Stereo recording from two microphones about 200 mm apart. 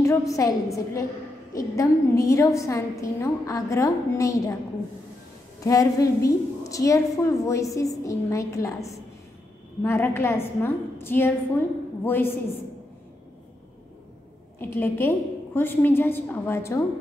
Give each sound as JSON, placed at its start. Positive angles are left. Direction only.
{"t": 0.0, "sound": "a woman's voice", "side_deg": 15}
{"t": 5.6, "sound": "a woman's voice", "side_deg": 15}
{"t": 14.6, "sound": "a woman's voice", "side_deg": 10}